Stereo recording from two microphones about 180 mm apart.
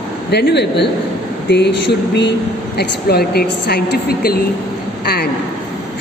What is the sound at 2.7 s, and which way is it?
A woman's voice, 60° left (ahead or behind).